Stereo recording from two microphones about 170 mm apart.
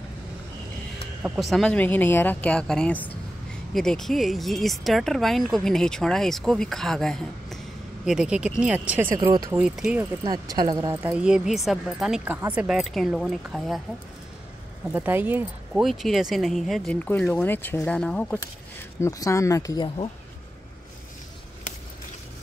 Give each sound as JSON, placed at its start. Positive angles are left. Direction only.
{"t": 1.4, "sound": "a woman's voice", "side_deg": 0}
{"t": 9.6, "sound": "speech", "side_deg": -5}
{"t": 10.2, "sound": "speech", "side_deg": -20}
{"t": 11.0, "sound": "speech", "side_deg": -10}
{"t": 14.9, "sound": "speech", "side_deg": -10}
{"t": 18.9, "sound": "speech", "side_deg": 20}